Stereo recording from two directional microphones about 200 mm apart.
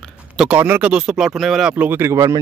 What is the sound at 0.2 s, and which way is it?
Speech, 5° right (ahead or behind).